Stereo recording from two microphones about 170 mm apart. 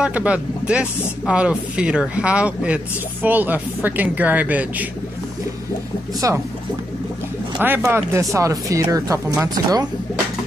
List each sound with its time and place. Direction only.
0.0 s speech: 10° right (ahead or behind)
6.2 s speech: 20° right (ahead or behind)
7.5 s speech: 10° right (ahead or behind)